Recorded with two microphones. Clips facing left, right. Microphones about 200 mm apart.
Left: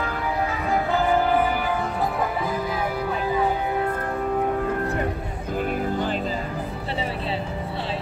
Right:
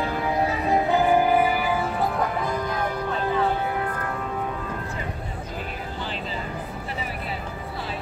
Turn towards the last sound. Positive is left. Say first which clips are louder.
# left 8 dB
turn(degrees=45)  # may be behind; listen again after turning